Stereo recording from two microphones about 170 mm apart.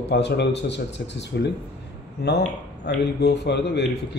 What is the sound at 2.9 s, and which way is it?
Speech, 85° left.